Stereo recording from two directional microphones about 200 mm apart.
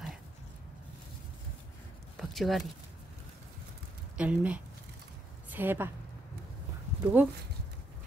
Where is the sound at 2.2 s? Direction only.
Centre (ahead or behind).